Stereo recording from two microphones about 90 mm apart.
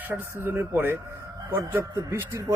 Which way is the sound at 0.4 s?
25° right (ahead or behind).